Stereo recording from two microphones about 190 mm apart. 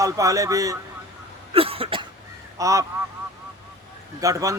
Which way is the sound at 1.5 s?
30° right (ahead or behind).